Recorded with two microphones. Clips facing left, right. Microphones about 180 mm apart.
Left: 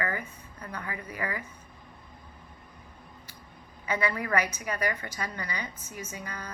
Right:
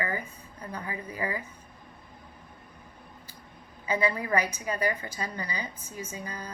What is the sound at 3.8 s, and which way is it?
A woman's voice, 30° right (ahead or behind).